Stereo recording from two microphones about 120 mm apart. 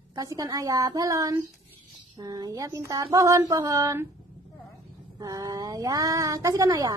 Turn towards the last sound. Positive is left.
turn(degrees=-30)  # may be behind; listen again after turning